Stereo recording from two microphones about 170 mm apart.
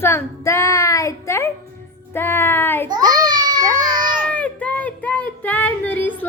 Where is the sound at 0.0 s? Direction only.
15° left (ahead or behind).